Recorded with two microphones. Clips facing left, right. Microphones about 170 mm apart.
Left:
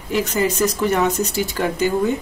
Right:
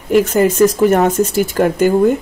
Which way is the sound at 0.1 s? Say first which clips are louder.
Right 8 dB; 50° right (ahead or behind).